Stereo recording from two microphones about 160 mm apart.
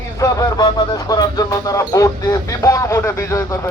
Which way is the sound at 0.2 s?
20° left (ahead or behind).